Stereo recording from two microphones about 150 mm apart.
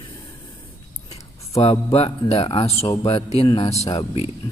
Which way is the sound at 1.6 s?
45° left (ahead or behind).